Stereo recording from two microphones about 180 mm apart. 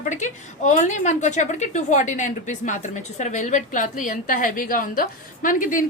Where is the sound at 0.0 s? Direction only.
40° left (ahead or behind).